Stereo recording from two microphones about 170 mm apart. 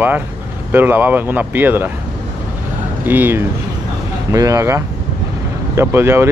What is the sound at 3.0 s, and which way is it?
Speech, 10° right (ahead or behind).